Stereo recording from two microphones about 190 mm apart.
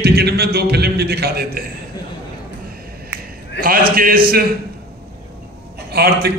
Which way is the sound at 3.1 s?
10° right (ahead or behind).